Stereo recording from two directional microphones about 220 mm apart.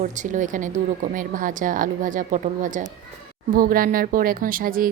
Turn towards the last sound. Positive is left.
turn(degrees=-40)  # may be behind; listen again after turning